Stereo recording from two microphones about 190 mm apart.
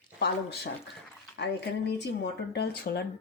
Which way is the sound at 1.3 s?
60° left (ahead or behind).